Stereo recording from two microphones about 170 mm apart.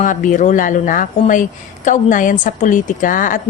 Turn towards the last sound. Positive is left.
turn(degrees=50)  # may be behind; listen again after turning